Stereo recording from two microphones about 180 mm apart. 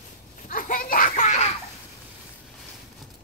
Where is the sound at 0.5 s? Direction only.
50° left (ahead or behind).